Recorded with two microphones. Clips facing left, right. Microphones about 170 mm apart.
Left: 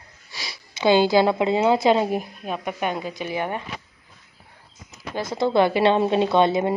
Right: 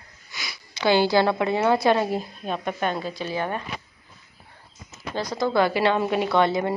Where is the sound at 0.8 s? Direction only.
20° left (ahead or behind).